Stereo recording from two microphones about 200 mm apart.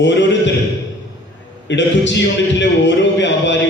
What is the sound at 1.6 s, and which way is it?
A man's voice, 65° left (ahead or behind).